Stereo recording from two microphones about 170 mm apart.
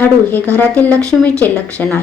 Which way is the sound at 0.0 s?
10° left (ahead or behind).